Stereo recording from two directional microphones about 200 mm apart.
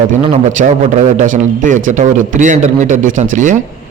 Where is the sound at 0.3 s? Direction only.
35° right (ahead or behind).